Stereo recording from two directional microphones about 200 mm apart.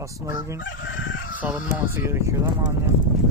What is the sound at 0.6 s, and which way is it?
Crowing, 70° left (ahead or behind).